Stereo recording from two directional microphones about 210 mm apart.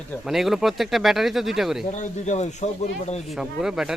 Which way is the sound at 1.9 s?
35° left (ahead or behind).